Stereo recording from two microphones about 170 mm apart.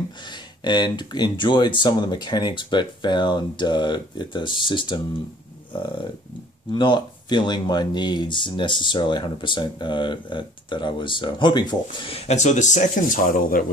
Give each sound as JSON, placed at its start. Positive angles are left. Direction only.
{"t": 0.3, "sound": "speech", "side_deg": 25}
{"t": 6.7, "sound": "speech", "side_deg": 30}